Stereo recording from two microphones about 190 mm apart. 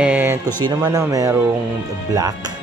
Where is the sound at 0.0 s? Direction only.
10° right (ahead or behind).